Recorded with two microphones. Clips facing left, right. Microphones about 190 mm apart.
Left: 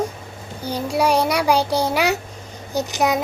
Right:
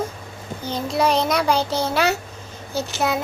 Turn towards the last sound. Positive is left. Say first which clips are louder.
# left 3 dB
turn(degrees=15)  # may be behind; listen again after turning